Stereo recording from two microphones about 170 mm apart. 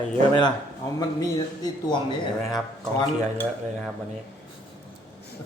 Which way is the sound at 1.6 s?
30° left (ahead or behind).